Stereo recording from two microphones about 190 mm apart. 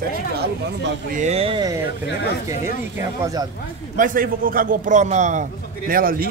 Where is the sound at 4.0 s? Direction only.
45° right (ahead or behind).